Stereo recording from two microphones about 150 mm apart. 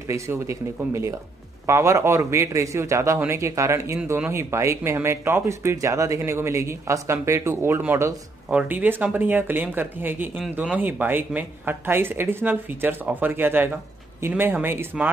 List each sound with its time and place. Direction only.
0.1 s a man's voice: 20° right (ahead or behind)